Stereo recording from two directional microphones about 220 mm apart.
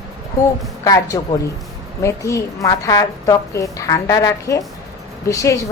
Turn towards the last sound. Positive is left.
turn(degrees=15)  # may be behind; listen again after turning